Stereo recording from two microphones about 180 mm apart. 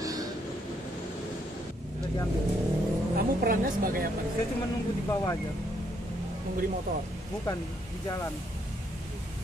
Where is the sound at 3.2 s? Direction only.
55° right (ahead or behind).